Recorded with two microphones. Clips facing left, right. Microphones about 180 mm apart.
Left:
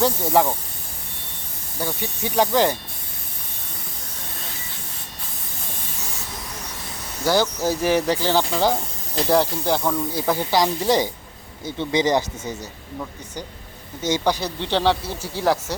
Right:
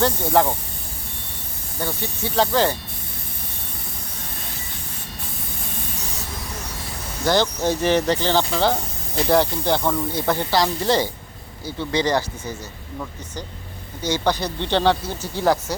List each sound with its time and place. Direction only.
0.0 s speech: 5° left (ahead or behind)
1.8 s speech: 15° left (ahead or behind)
7.3 s speech: 10° left (ahead or behind)
14.0 s speech: 20° left (ahead or behind)
14.3 s speech: 5° left (ahead or behind)